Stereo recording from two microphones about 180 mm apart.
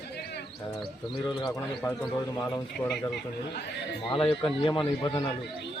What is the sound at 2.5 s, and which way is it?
Speech, 5° left (ahead or behind).